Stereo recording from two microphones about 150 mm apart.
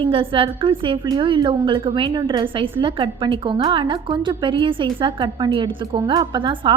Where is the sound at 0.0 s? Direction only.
35° right (ahead or behind).